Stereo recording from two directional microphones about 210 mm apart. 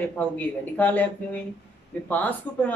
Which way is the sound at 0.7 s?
10° left (ahead or behind).